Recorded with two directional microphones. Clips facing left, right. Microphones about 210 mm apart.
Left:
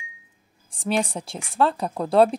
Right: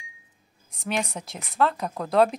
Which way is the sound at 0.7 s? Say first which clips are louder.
Left 5 dB; 30° left (ahead or behind).